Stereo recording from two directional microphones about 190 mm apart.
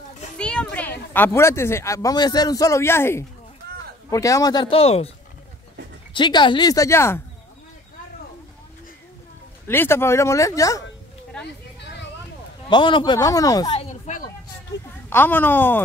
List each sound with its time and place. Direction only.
0.4 s children playing: 5° left (ahead or behind)
1.1 s a man's voice: 10° left (ahead or behind); by 5.1 s 30° left (ahead or behind)
6.1 s a man's voice: 25° left (ahead or behind)
9.7 s speech: 10° left (ahead or behind)
12.6 s a man's voice: 25° left (ahead or behind)
13.7 s a sound: 40° left (ahead or behind)
15.0 s speech: 10° left (ahead or behind)